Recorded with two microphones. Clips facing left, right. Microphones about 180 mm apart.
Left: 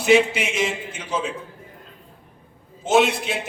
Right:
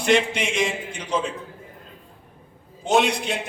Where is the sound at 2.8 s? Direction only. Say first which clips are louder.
Left 2 dB; centre (ahead or behind).